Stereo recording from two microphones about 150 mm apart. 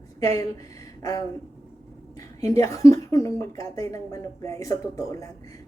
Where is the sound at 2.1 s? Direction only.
20° left (ahead or behind).